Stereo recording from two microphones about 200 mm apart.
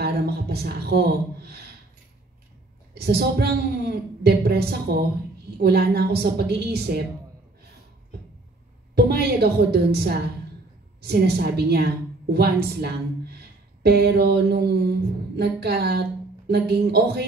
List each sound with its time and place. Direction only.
0.0 s a sound: 55° right (ahead or behind)
2.9 s speech: 55° right (ahead or behind)
8.9 s a woman's voice: 55° right (ahead or behind)